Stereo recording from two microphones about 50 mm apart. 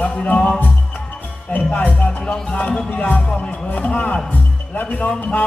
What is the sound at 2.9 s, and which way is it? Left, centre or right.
Speech, left.